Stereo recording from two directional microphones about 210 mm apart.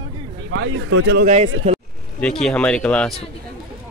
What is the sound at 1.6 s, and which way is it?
Speech, 40° right (ahead or behind).